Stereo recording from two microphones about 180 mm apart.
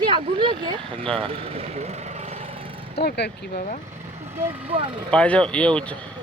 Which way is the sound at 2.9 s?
65° left (ahead or behind).